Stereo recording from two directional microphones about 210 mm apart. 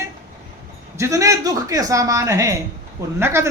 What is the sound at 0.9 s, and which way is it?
A man's voice, 15° right (ahead or behind).